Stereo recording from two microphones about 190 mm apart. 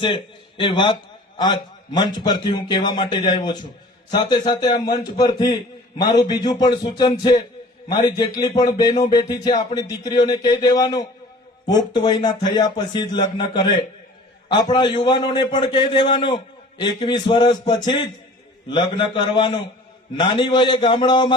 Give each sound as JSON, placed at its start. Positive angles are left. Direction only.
{"t": 0.0, "sound": "a man's voice", "side_deg": 25}